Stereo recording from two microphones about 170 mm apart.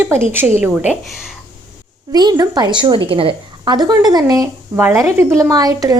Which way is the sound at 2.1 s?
25° right (ahead or behind).